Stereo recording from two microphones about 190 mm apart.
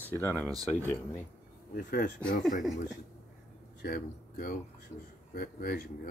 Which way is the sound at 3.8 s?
50° left (ahead or behind).